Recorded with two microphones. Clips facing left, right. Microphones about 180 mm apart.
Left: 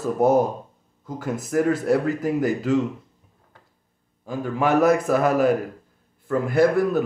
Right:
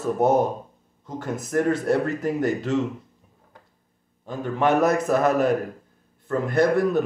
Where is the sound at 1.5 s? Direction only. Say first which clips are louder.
Left 1 dB; 5° left (ahead or behind).